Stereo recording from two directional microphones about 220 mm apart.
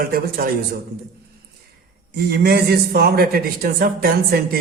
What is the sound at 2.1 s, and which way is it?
A man's voice, 45° right (ahead or behind).